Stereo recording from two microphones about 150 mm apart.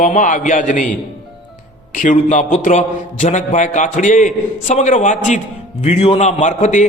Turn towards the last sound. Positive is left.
turn(degrees=50)  # may be behind; listen again after turning